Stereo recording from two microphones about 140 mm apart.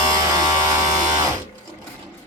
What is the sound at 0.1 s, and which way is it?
Electric shaver, 25° right (ahead or behind).